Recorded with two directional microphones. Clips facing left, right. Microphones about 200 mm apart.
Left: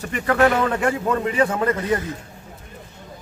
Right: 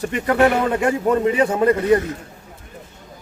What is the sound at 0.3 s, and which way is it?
A man's voice, 20° right (ahead or behind).